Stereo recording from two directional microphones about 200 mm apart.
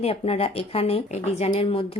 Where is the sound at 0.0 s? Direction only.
30° left (ahead or behind).